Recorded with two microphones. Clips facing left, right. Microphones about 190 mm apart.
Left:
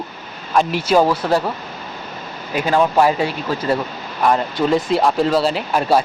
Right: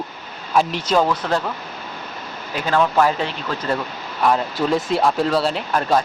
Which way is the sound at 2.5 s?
15° left (ahead or behind).